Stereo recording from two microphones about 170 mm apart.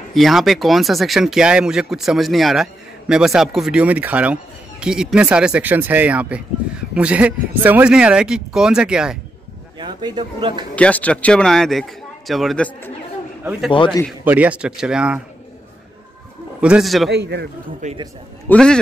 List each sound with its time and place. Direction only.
0.1 s speech: centre (ahead or behind)
9.8 s a man's voice: 25° right (ahead or behind)
10.8 s speech: 10° left (ahead or behind)
13.4 s a man's voice: 10° right (ahead or behind)
13.7 s a man's voice: 30° left (ahead or behind)
14.2 s speech: 10° right (ahead or behind)
16.6 s speech: 5° right (ahead or behind)
17.1 s a man's voice: 80° right
17.8 s a man's voice: 45° right (ahead or behind)
18.5 s speech: 5° left (ahead or behind)